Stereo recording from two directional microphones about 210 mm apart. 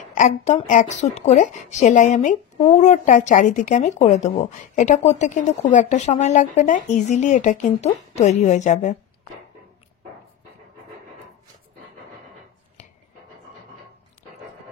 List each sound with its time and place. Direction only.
0.1 s speech: 35° left (ahead or behind)